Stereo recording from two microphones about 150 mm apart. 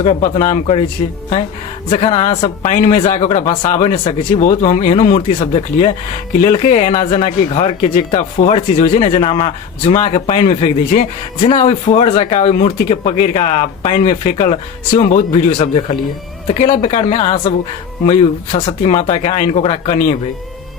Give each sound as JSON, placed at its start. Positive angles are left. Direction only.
{"t": 0.0, "sound": "speech", "side_deg": 45}
{"t": 1.9, "sound": "speech", "side_deg": 45}
{"t": 2.7, "sound": "speech", "side_deg": 55}
{"t": 3.6, "sound": "speech", "side_deg": 50}
{"t": 5.4, "sound": "speech", "side_deg": 40}
{"t": 6.4, "sound": "speech", "side_deg": 55}
{"t": 7.0, "sound": "speech", "side_deg": 40}
{"t": 15.5, "sound": "speech", "side_deg": 35}
{"t": 16.6, "sound": "speech", "side_deg": 50}